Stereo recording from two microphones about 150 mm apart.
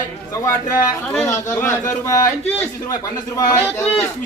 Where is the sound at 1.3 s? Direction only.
20° left (ahead or behind).